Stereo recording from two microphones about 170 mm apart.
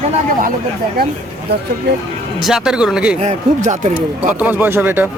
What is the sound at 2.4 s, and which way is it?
Speech, 5° right (ahead or behind).